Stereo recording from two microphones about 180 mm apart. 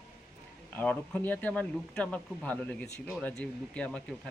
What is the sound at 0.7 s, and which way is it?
Speech, 5° left (ahead or behind).